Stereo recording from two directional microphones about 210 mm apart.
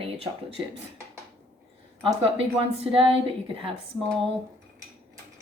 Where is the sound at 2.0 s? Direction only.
25° right (ahead or behind).